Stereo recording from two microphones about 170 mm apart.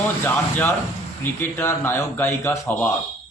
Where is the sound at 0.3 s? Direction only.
10° left (ahead or behind).